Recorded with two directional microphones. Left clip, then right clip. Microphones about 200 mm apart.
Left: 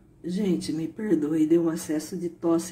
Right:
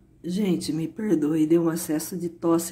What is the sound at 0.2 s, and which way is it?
A woman's voice, 25° right (ahead or behind).